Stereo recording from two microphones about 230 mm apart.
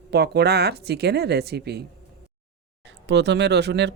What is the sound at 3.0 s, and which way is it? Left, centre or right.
Speech, right.